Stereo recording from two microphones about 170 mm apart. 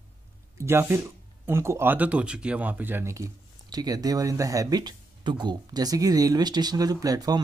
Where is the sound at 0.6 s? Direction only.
15° right (ahead or behind).